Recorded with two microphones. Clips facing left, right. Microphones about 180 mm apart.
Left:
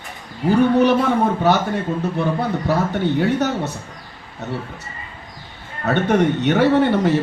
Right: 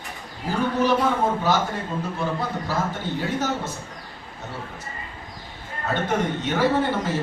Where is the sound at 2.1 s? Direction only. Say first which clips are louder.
Left 6 dB; 65° left (ahead or behind).